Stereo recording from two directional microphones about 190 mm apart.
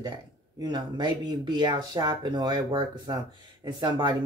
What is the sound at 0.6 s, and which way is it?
Speech, 20° right (ahead or behind).